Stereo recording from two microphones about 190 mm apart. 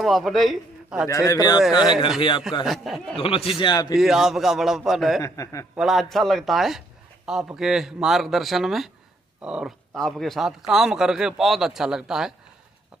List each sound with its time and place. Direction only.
0.0 s a man's voice: centre (ahead or behind)
1.0 s a man's voice: 15° left (ahead or behind)
2.6 s speech: centre (ahead or behind)
3.2 s speech: 30° left (ahead or behind)
3.9 s speech: centre (ahead or behind)
5.2 s a man's voice: 15° left (ahead or behind)
5.8 s speech: centre (ahead or behind)